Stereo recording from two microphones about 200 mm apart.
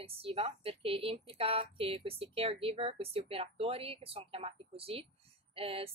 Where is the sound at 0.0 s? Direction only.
30° right (ahead or behind).